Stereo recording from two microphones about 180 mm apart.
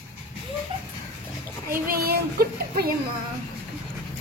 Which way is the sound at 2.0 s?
60° right (ahead or behind).